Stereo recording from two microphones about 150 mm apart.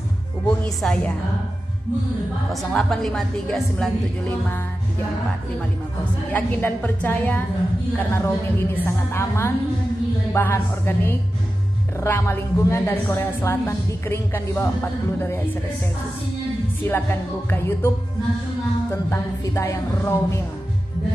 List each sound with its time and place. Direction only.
0.5 s speech: 10° left (ahead or behind)
2.5 s a woman's voice: centre (ahead or behind)
6.3 s a woman's voice: 10° left (ahead or behind)
16.8 s a woman's voice: 15° left (ahead or behind)
19.0 s a woman's voice: 15° left (ahead or behind)